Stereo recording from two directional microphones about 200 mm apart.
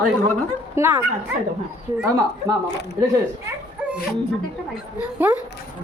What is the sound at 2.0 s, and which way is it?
Speech, 15° right (ahead or behind).